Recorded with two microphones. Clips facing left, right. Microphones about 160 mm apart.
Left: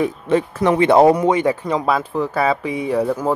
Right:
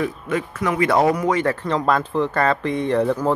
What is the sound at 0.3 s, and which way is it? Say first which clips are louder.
Speech: left 8 dB; 30° left (ahead or behind).